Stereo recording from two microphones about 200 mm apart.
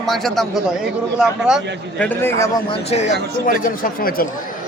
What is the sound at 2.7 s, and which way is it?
Speech, 30° left (ahead or behind).